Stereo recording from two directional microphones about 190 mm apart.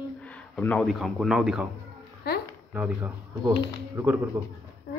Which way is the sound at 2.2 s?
55° left (ahead or behind).